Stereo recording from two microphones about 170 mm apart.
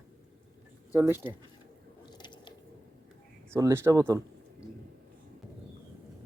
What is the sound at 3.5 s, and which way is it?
Speech, 15° right (ahead or behind).